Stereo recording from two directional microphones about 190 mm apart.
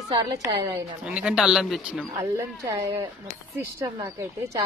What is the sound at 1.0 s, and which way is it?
Speech, 5° right (ahead or behind).